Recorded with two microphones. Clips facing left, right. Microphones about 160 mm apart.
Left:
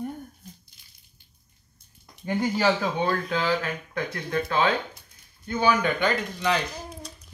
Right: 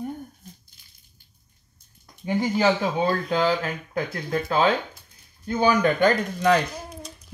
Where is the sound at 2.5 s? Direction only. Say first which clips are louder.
Right 3 dB; 20° right (ahead or behind).